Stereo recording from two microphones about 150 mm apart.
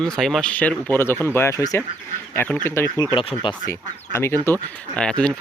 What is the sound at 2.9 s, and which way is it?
Speech, 30° left (ahead or behind).